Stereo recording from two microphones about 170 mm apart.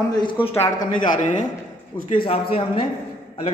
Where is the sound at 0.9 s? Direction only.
50° left (ahead or behind).